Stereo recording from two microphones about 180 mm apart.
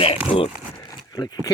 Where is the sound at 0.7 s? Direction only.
20° left (ahead or behind).